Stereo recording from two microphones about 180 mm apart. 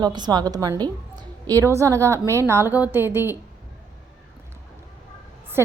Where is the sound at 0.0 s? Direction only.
25° right (ahead or behind).